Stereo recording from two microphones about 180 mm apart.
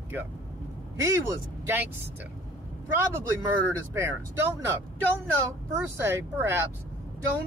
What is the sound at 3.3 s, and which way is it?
Speech, 15° right (ahead or behind).